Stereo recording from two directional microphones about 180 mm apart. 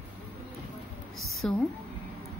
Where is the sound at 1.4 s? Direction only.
5° left (ahead or behind).